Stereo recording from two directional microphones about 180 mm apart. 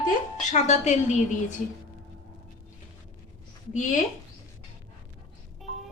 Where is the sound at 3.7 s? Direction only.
45° left (ahead or behind).